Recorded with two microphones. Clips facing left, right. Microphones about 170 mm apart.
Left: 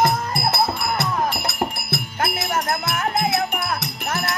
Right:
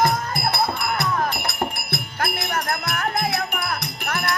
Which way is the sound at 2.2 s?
25° left (ahead or behind).